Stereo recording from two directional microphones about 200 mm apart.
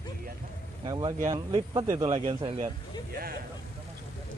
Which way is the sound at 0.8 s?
20° right (ahead or behind).